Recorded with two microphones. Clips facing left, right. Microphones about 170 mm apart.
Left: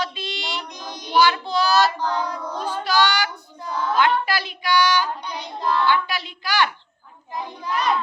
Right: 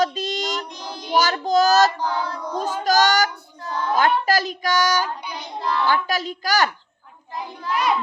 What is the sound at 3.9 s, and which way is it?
A child's voice, 40° right (ahead or behind).